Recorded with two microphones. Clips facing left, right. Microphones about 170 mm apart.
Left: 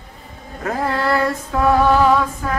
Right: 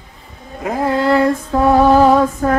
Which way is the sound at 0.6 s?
15° right (ahead or behind).